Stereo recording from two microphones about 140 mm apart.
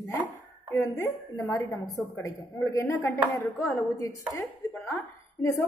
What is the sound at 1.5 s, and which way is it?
A woman's voice, 20° left (ahead or behind).